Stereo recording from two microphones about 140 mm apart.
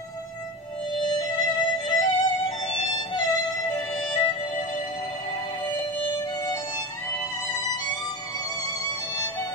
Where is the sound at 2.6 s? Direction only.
40° left (ahead or behind).